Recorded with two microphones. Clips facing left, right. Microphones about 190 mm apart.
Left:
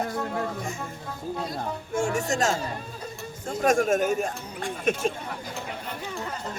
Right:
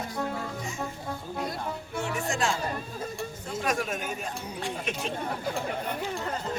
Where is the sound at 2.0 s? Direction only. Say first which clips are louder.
Left 5 dB; 45° left (ahead or behind).